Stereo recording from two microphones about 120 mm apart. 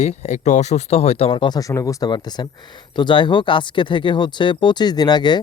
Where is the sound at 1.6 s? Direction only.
30° left (ahead or behind).